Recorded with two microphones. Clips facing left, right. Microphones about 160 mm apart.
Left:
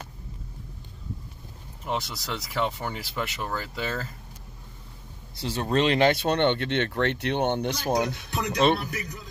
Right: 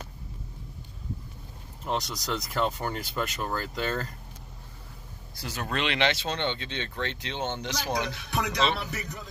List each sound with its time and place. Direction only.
1.9 s speech: 5° left (ahead or behind)
5.3 s speech: 30° left (ahead or behind); by 8.9 s 55° left (ahead or behind)